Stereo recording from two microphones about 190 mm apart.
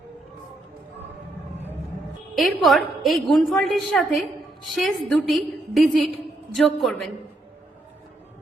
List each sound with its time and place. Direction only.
2.3 s a woman's voice: centre (ahead or behind)